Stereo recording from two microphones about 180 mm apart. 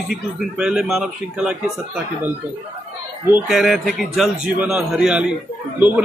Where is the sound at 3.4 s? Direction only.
Centre (ahead or behind).